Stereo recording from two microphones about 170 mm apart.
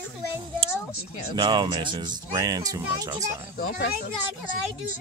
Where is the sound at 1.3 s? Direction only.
25° right (ahead or behind).